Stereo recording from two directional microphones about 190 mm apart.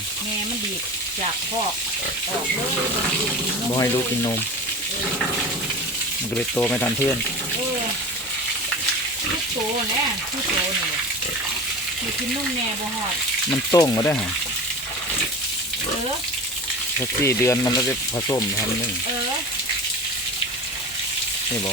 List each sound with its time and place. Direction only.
3.8 s speech: 15° left (ahead or behind)
6.3 s speech: 10° left (ahead or behind)
13.7 s speech: 20° left (ahead or behind)
17.2 s speech: 15° left (ahead or behind)